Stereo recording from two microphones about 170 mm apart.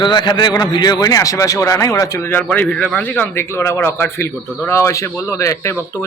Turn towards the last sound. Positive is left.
turn(degrees=15)  # may be behind; listen again after turning